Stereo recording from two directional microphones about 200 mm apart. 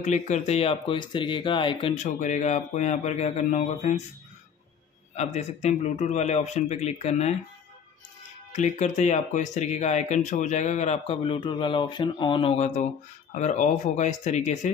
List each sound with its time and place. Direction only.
0.0 s speech: 35° left (ahead or behind)
2.0 s speech: 40° left (ahead or behind)
5.1 s speech: 35° left (ahead or behind)
8.5 s speech: 35° left (ahead or behind)